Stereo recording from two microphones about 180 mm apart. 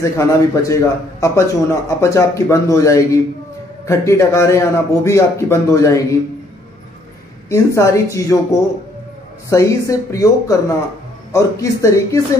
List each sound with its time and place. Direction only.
0.0 s a man's voice: 15° left (ahead or behind)
7.4 s a man's voice: 15° left (ahead or behind)